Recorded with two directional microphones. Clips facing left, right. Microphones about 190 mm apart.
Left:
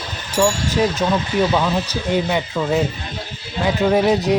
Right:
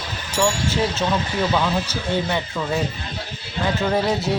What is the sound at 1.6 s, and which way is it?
Speech, 15° left (ahead or behind).